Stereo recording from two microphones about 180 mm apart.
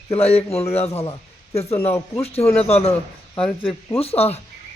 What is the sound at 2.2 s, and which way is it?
Speech, 35° left (ahead or behind).